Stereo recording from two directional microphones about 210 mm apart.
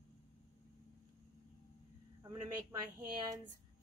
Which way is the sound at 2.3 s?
15° right (ahead or behind).